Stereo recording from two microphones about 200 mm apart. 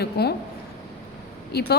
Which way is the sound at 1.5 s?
55° left (ahead or behind).